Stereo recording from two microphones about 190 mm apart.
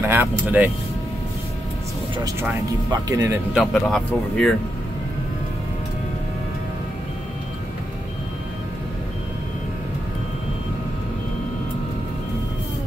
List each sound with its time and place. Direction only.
0.0 s speech: 10° right (ahead or behind)
2.9 s speech: 20° right (ahead or behind)
3.5 s speech: 5° left (ahead or behind)